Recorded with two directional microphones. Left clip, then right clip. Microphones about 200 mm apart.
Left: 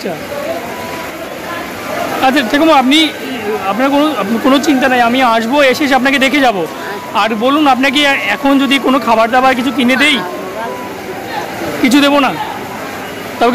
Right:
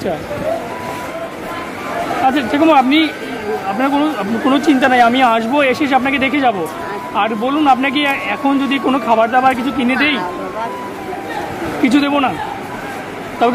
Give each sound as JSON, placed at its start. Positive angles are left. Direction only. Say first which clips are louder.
{"t": 2.2, "sound": "a man's voice", "louder": "left 3 dB", "side_deg": 5}
{"t": 11.8, "sound": "a man's voice", "louder": "left 5 dB", "side_deg": 5}
{"t": 13.4, "sound": "a man's voice", "louder": "left 3 dB", "side_deg": 5}